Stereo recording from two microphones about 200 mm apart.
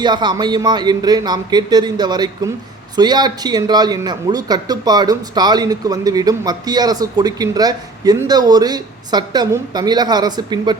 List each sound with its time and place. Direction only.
0.0 s speech: 20° right (ahead or behind)